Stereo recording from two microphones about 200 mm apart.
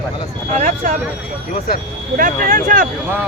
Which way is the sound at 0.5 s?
40° right (ahead or behind).